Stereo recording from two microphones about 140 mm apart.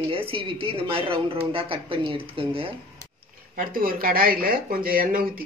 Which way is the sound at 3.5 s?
90° right.